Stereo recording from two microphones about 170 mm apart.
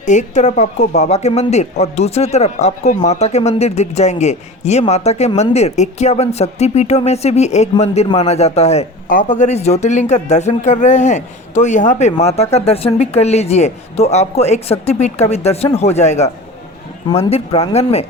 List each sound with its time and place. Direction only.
0.0 s speech: 45° left (ahead or behind)
9.0 s speech: 50° left (ahead or behind)